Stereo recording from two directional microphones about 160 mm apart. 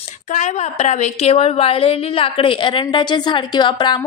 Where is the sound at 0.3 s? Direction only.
50° left (ahead or behind).